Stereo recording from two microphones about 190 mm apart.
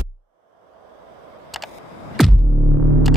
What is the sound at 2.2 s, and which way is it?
Music, centre (ahead or behind).